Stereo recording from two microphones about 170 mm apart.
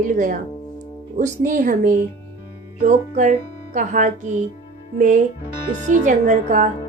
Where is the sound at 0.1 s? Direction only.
50° right (ahead or behind).